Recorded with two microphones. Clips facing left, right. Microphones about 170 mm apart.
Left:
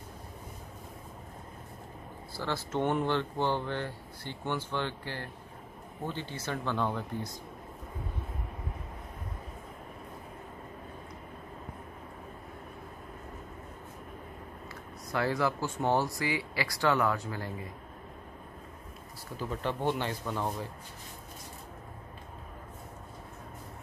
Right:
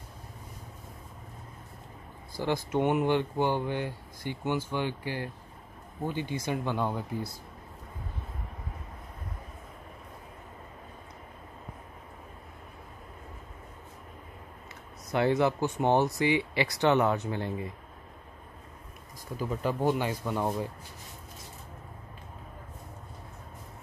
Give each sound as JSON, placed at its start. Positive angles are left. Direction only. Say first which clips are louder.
{"t": 2.3, "sound": "speech", "louder": "right 4 dB", "side_deg": -15}
{"t": 15.1, "sound": "speech", "louder": "right 4 dB", "side_deg": -20}
{"t": 19.5, "sound": "speech", "louder": "right 4 dB", "side_deg": -5}